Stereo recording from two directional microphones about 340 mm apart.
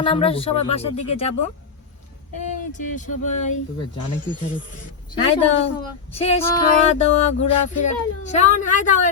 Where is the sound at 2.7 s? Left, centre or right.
Left.